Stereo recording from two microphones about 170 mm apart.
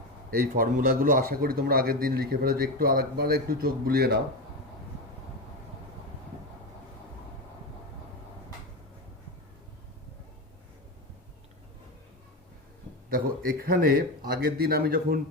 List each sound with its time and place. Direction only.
0.3 s a man's voice: 60° right (ahead or behind)
13.1 s a man's voice: 55° right (ahead or behind)